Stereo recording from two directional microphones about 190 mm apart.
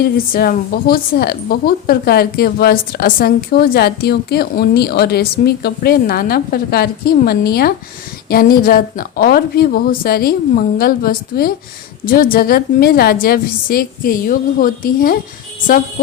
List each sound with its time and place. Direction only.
0.0 s a woman's voice: 55° left (ahead or behind)